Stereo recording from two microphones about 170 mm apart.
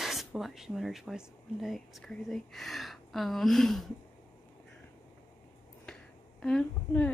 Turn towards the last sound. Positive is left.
turn(degrees=5)  # may be behind; listen again after turning